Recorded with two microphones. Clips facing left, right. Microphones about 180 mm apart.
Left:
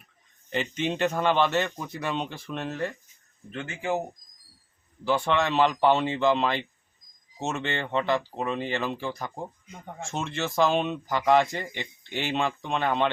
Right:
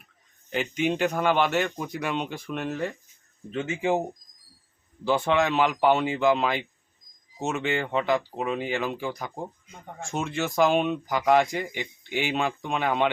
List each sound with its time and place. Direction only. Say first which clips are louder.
0.5 s speech: right 2 dB; 5° right (ahead or behind)
5.0 s speech: right 2 dB; 15° right (ahead or behind)
10.2 s speech: right 2 dB; centre (ahead or behind)